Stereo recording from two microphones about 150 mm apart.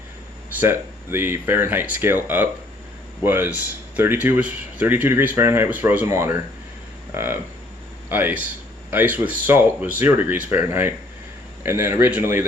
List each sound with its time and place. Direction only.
0.6 s speech: 15° right (ahead or behind)
7.1 s a sound: 15° right (ahead or behind)
8.1 s speech: 10° right (ahead or behind)